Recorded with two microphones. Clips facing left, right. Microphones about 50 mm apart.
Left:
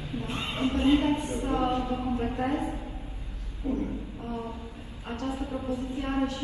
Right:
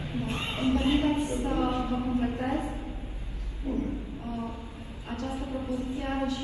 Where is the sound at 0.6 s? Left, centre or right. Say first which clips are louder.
Left 2 dB; left.